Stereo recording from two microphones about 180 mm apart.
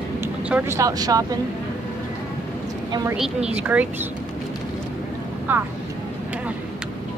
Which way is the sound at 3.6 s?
10° right (ahead or behind).